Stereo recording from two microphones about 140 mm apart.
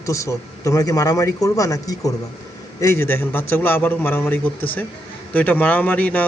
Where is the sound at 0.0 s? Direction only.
20° left (ahead or behind).